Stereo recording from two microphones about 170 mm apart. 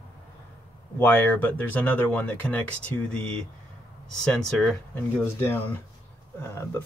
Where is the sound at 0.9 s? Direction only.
10° left (ahead or behind).